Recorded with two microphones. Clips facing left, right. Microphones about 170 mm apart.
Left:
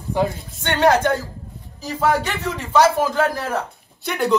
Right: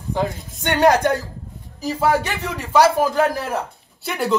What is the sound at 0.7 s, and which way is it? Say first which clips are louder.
Speech: right 1 dB; 15° right (ahead or behind).